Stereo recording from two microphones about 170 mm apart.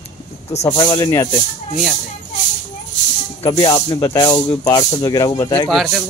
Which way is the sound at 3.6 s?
20° left (ahead or behind).